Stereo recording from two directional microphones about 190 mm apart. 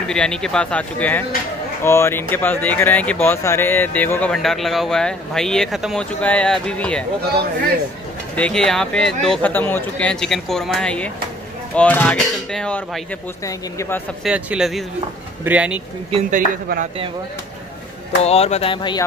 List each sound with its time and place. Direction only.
0.1 s speech: 5° left (ahead or behind)
8.4 s speech: 5° left (ahead or behind)
14.2 s speech: 5° right (ahead or behind)
16.1 s speech: 40° right (ahead or behind)
18.2 s speech: 35° left (ahead or behind)